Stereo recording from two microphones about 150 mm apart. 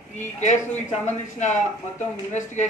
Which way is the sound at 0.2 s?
55° left (ahead or behind).